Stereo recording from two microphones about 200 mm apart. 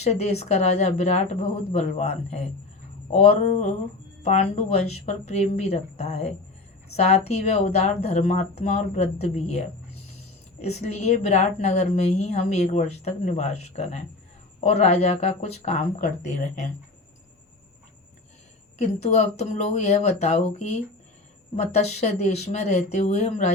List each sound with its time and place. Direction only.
0.0 s a woman's voice: 30° left (ahead or behind)
18.8 s a woman's voice: 35° left (ahead or behind)
21.5 s a woman's voice: 30° left (ahead or behind)